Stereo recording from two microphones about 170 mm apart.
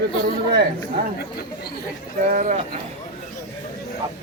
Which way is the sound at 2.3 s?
50° right (ahead or behind).